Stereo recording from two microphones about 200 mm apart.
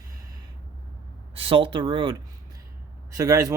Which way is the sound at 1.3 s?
25° right (ahead or behind).